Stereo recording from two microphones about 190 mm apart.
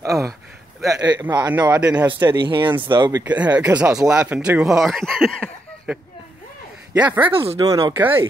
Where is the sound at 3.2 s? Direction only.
5° right (ahead or behind).